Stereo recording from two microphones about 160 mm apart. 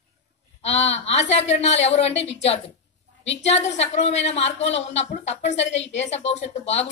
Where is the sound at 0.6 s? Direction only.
45° left (ahead or behind).